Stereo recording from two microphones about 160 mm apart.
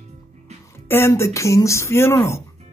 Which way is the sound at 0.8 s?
15° left (ahead or behind).